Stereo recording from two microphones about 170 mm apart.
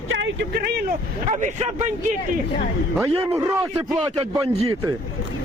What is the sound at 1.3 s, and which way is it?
Speech, 45° right (ahead or behind).